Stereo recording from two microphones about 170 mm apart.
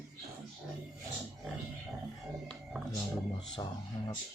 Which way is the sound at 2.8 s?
Centre (ahead or behind).